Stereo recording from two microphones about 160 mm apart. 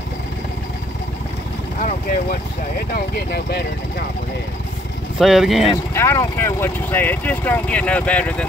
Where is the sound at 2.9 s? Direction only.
90° left.